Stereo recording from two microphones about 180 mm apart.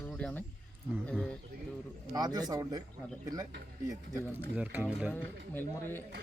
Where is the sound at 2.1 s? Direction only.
20° right (ahead or behind).